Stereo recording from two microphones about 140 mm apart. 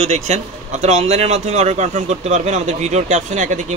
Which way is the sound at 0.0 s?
55° right (ahead or behind).